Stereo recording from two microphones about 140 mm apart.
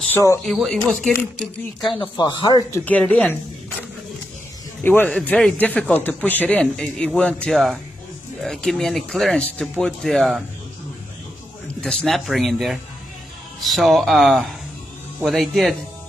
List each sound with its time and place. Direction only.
0.1 s speech: 20° left (ahead or behind)
0.5 s speech: centre (ahead or behind)
1.8 s speech: 35° left (ahead or behind)
2.7 s a man's voice: 10° left (ahead or behind)
4.8 s a man's voice: 15° left (ahead or behind)
11.6 s a man's voice: 5° left (ahead or behind)